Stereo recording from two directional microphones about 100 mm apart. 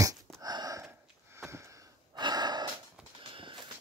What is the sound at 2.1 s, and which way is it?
Gasp, 45° right (ahead or behind).